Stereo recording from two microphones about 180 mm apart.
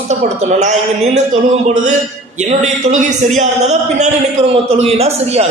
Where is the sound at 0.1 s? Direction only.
40° right (ahead or behind).